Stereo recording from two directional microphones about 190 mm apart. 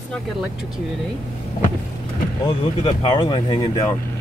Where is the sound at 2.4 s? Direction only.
25° left (ahead or behind).